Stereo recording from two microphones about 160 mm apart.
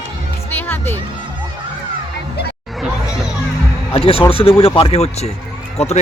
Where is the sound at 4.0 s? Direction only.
35° left (ahead or behind).